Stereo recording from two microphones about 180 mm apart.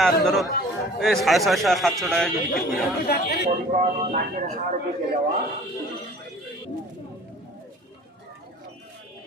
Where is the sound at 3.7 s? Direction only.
45° right (ahead or behind).